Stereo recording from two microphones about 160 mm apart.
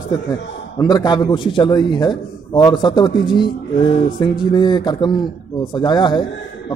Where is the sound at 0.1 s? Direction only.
25° left (ahead or behind).